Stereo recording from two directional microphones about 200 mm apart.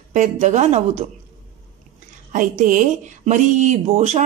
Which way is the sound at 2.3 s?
40° right (ahead or behind).